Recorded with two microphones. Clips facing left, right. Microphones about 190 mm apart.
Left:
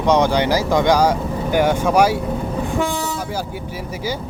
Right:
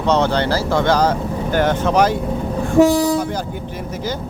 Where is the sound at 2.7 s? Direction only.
35° right (ahead or behind).